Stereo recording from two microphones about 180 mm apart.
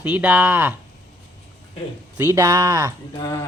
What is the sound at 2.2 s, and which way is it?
Speech, 15° right (ahead or behind).